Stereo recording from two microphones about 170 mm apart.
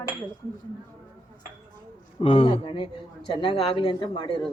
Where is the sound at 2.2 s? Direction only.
35° left (ahead or behind).